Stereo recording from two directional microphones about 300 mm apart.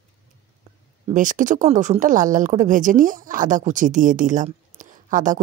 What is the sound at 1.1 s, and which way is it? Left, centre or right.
Speech, right.